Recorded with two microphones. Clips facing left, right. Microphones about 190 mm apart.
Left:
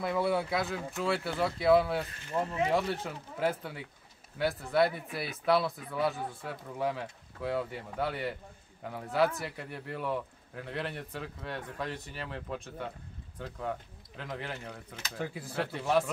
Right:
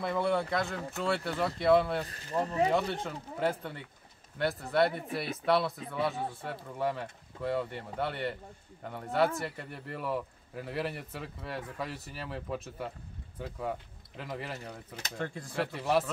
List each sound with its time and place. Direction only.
0.0 s a man's voice: 5° left (ahead or behind)
2.0 s speech: 35° right (ahead or behind)
2.7 s a man's voice: 5° left (ahead or behind)